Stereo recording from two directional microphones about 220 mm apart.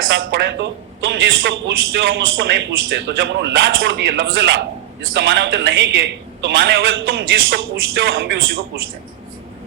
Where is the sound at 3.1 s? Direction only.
55° right (ahead or behind).